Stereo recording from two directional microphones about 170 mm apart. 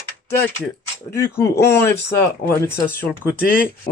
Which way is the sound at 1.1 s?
15° left (ahead or behind).